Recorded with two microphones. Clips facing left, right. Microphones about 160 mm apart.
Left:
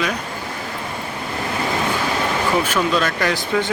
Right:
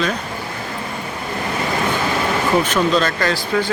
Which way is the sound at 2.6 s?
10° left (ahead or behind).